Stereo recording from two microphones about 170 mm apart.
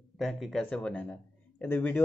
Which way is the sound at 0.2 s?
Centre (ahead or behind).